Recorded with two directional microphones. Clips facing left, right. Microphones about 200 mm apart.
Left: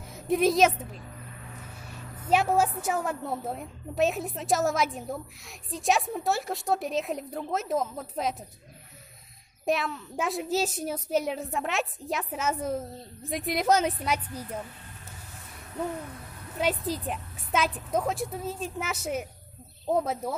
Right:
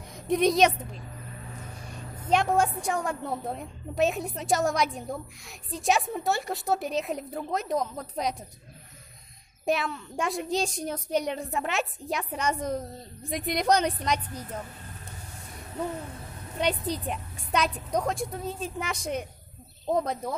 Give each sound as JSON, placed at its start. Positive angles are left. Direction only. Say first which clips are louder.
{"t": 0.1, "sound": "a woman's voice", "louder": "even", "side_deg": 5}
{"t": 2.2, "sound": "a woman's voice", "louder": "even", "side_deg": 5}
{"t": 9.7, "sound": "a woman's voice", "louder": "even", "side_deg": 0}
{"t": 16.5, "sound": "a woman's voice", "louder": "even", "side_deg": 5}